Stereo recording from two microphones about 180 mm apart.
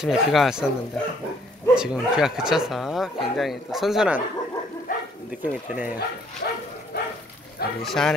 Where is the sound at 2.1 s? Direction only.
5° right (ahead or behind).